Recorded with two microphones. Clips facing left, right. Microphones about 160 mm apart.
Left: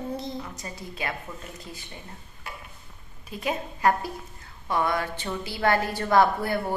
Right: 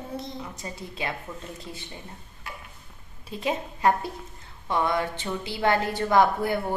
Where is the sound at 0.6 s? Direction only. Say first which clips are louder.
Right 1 dB; 20° right (ahead or behind).